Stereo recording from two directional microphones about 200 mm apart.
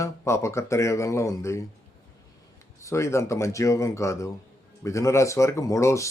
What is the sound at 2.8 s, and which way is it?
Speech, 15° left (ahead or behind).